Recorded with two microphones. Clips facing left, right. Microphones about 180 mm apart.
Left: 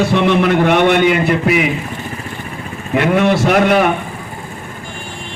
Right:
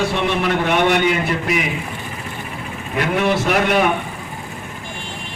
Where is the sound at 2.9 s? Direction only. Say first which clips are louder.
Left 5 dB; 50° left (ahead or behind).